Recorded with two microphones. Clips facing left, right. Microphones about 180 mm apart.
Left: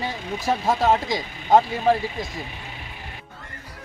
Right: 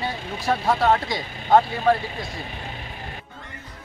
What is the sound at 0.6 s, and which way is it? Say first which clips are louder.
Speech: even; 20° left (ahead or behind).